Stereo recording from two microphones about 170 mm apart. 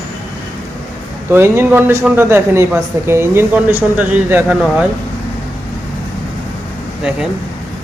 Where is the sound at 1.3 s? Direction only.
15° right (ahead or behind).